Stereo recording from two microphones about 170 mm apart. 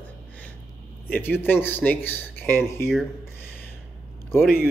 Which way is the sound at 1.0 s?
10° left (ahead or behind).